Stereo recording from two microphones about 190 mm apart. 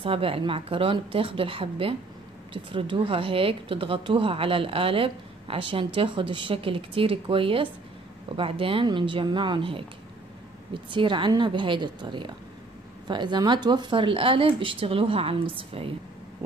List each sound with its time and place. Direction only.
0.0 s speech: 30° right (ahead or behind)